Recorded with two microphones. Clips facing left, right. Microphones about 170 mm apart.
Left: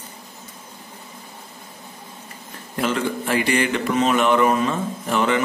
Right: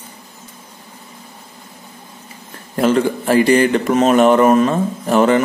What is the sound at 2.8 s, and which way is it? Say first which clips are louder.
Speech: right 8 dB; 40° right (ahead or behind).